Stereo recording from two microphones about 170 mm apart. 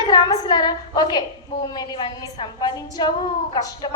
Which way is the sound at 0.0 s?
25° left (ahead or behind).